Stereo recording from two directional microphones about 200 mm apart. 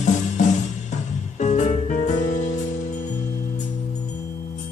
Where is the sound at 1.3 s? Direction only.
35° left (ahead or behind).